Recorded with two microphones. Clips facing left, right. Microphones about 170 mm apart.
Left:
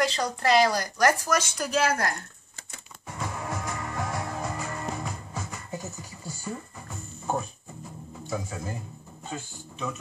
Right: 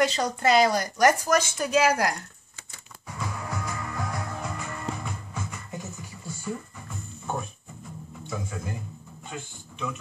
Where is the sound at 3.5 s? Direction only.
25° left (ahead or behind).